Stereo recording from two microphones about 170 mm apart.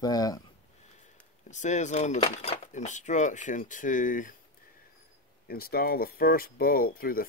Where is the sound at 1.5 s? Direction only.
45° left (ahead or behind).